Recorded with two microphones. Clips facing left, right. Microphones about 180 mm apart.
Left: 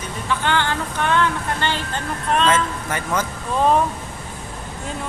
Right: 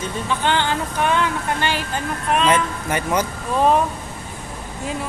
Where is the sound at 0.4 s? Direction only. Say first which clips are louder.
Right 1 dB; 15° right (ahead or behind).